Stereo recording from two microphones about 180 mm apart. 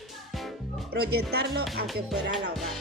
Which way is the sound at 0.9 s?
65° right (ahead or behind).